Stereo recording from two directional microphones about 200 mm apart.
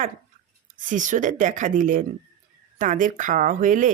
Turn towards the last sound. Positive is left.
turn(degrees=-40)  # may be behind; listen again after turning